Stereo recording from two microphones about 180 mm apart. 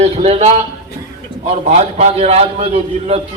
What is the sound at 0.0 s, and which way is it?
Speech, 35° right (ahead or behind).